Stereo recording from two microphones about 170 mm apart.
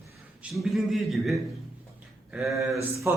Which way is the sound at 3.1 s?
15° right (ahead or behind).